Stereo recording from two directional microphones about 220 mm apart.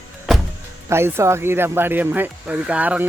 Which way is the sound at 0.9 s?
10° right (ahead or behind).